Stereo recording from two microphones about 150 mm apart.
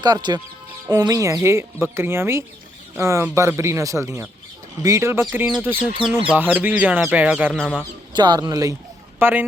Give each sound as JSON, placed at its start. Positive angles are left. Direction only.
{"t": 0.0, "sound": "speech", "side_deg": -30}
{"t": 7.5, "sound": "speech", "side_deg": 5}
{"t": 8.1, "sound": "speech", "side_deg": -30}
{"t": 9.1, "sound": "speech", "side_deg": -10}